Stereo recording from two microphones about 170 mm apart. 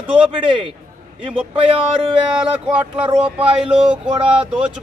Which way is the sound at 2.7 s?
10° right (ahead or behind).